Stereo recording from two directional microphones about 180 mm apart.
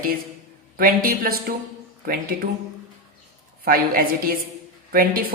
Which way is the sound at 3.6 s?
55° right (ahead or behind).